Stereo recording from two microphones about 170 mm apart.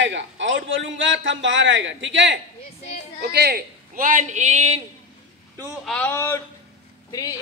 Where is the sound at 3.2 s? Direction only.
80° right; by 4.8 s 40° right (ahead or behind).